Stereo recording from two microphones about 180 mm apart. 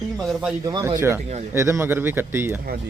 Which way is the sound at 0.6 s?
20° right (ahead or behind).